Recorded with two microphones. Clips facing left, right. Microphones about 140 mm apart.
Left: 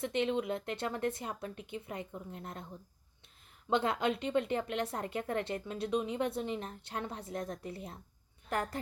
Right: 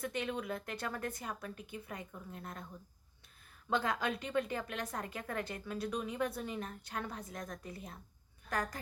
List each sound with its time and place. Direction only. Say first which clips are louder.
0.0 s speech: left 6 dB; 25° left (ahead or behind)
3.7 s speech: left 4 dB; 25° left (ahead or behind)